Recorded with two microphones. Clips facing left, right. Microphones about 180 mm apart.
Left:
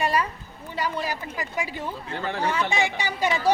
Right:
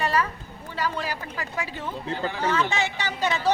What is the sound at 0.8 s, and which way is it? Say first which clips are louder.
Speech: left 1 dB; 15° left (ahead or behind).